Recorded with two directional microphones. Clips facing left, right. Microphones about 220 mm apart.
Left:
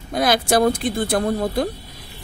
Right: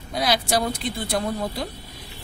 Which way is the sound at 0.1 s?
50° left (ahead or behind).